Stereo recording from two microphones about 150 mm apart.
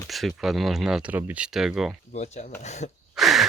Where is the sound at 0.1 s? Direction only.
Centre (ahead or behind).